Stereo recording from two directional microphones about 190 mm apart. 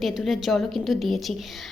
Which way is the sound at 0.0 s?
Centre (ahead or behind).